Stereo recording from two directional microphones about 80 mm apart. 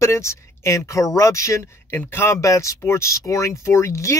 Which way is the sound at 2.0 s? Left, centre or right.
Left.